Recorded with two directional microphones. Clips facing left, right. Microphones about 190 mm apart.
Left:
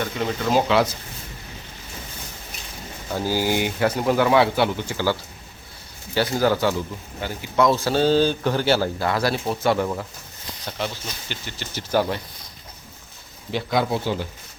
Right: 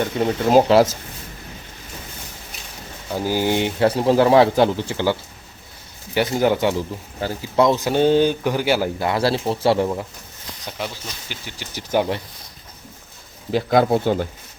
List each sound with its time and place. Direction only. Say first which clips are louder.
0.2 s speech: right 6 dB; 40° right (ahead or behind)
3.1 s a man's voice: right 2 dB; 15° right (ahead or behind)
6.1 s a man's voice: right 2 dB; 20° right (ahead or behind)
10.7 s speech: left 1 dB; 10° right (ahead or behind)
13.5 s speech: right 6 dB; 50° right (ahead or behind)